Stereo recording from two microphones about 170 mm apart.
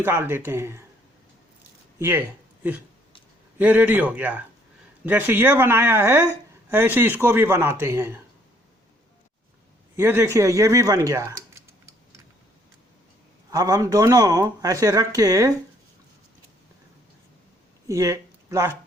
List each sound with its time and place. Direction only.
0.0 s speech: 15° right (ahead or behind)
2.0 s speech: 15° right (ahead or behind)
3.6 s speech: 10° right (ahead or behind)
9.9 s speech: 15° right (ahead or behind)
13.5 s speech: 20° right (ahead or behind)
17.8 s speech: 20° right (ahead or behind)